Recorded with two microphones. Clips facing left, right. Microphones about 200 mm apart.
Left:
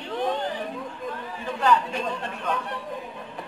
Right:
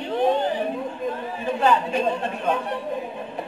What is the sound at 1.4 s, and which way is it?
Speech, 20° right (ahead or behind).